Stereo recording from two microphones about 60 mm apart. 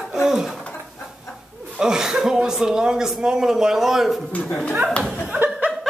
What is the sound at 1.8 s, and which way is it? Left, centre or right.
A man's voice, centre.